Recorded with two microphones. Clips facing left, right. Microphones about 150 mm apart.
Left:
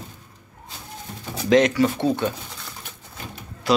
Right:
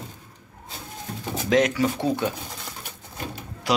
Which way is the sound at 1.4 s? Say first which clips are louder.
Left 4 dB; 5° right (ahead or behind).